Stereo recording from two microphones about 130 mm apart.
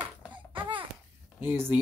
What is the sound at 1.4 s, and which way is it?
Speech, 15° right (ahead or behind).